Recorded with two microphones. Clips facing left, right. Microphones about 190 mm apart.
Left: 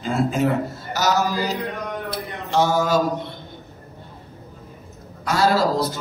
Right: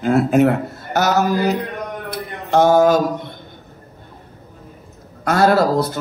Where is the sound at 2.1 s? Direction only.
55° right (ahead or behind).